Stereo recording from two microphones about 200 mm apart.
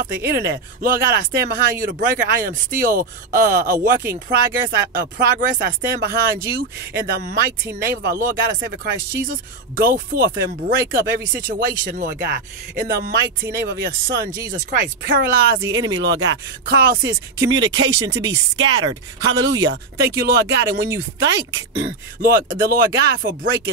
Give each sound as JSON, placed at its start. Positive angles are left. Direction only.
{"t": 0.0, "sound": "speech", "side_deg": -55}
{"t": 8.5, "sound": "speech", "side_deg": -60}
{"t": 9.3, "sound": "speech", "side_deg": -45}
{"t": 14.3, "sound": "speech", "side_deg": -20}
{"t": 15.0, "sound": "speech", "side_deg": -55}
{"t": 15.6, "sound": "speech", "side_deg": -20}
{"t": 16.0, "sound": "speech", "side_deg": -65}
{"t": 16.6, "sound": "speech", "side_deg": -50}
{"t": 17.6, "sound": "speech", "side_deg": -20}
{"t": 19.2, "sound": "speech", "side_deg": -65}
{"t": 19.7, "sound": "speech", "side_deg": -55}
{"t": 21.3, "sound": "speech", "side_deg": -15}
{"t": 21.7, "sound": "speech", "side_deg": -50}